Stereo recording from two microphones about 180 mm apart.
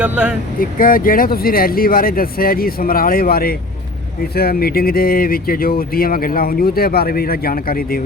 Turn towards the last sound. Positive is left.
turn(degrees=55)  # may be behind; listen again after turning